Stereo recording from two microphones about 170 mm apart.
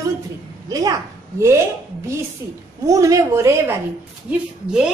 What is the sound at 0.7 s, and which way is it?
Speech, 20° right (ahead or behind).